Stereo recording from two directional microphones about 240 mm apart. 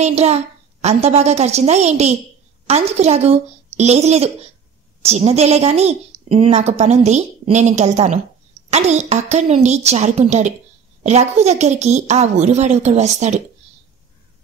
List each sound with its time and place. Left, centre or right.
0.0 s a woman's voice: right